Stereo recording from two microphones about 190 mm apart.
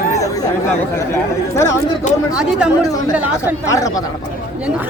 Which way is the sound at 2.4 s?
5° right (ahead or behind).